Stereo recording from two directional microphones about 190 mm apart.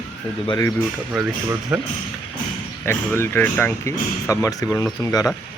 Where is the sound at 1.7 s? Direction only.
5° right (ahead or behind).